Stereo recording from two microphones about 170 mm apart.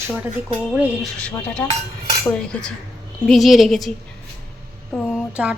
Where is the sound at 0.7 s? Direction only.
5° right (ahead or behind).